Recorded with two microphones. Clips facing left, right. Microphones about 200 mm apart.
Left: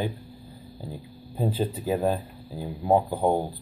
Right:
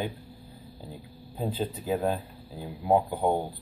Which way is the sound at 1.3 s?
5° left (ahead or behind).